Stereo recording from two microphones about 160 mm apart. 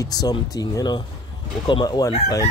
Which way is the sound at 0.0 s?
25° left (ahead or behind).